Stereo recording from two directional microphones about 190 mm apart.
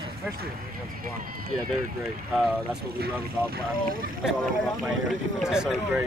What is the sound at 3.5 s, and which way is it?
Speech, 50° right (ahead or behind).